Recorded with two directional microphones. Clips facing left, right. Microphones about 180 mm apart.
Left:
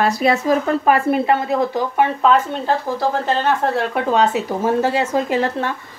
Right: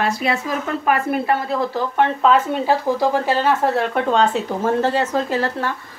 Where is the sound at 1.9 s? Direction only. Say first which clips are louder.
Even; 5° left (ahead or behind).